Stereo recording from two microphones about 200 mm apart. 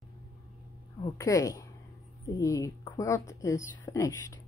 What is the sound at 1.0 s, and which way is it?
Speech, 15° left (ahead or behind).